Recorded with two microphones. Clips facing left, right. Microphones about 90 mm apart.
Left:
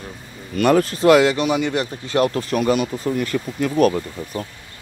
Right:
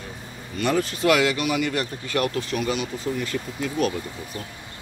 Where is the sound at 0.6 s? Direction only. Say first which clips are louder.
Left 7 dB; 50° left (ahead or behind).